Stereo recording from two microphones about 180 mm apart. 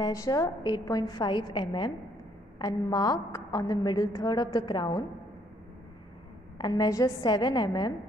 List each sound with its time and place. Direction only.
0.0 s a woman's voice: 20° left (ahead or behind)
6.6 s a woman's voice: 20° left (ahead or behind)